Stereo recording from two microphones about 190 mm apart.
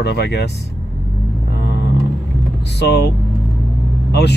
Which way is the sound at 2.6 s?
60° left (ahead or behind).